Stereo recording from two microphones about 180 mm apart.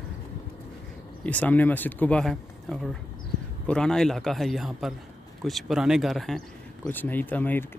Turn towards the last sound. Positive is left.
turn(degrees=10)  # may be behind; listen again after turning